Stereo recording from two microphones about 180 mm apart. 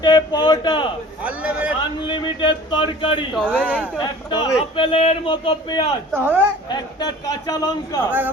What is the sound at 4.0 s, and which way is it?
Speech, 25° left (ahead or behind).